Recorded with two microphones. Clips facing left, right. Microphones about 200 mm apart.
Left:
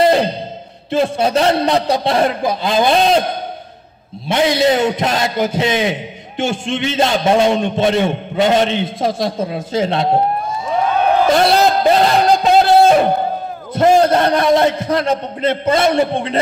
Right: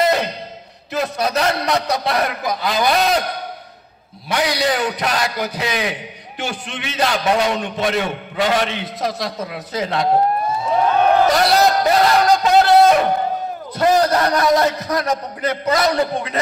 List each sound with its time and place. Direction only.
0.0 s a sound: 30° left (ahead or behind)
0.8 s a man's voice: 30° left (ahead or behind)
11.2 s music: 25° left (ahead or behind)
13.7 s a man's voice: 25° left (ahead or behind)